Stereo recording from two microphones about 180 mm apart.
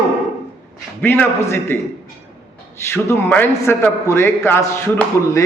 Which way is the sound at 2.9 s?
10° left (ahead or behind).